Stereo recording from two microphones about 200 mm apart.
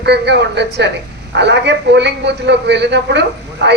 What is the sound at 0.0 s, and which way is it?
A woman's voice, 55° right (ahead or behind).